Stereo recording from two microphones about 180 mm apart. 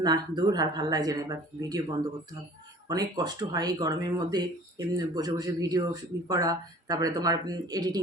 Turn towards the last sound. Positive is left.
turn(degrees=-20)  # may be behind; listen again after turning